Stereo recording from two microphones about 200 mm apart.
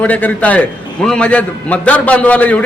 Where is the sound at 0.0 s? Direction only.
5° left (ahead or behind).